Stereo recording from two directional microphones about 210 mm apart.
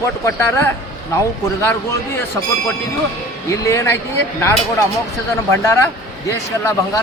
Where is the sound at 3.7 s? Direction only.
15° left (ahead or behind).